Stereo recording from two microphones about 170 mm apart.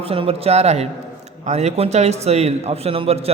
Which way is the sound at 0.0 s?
35° right (ahead or behind).